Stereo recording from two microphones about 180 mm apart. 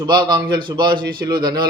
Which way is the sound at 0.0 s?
25° right (ahead or behind).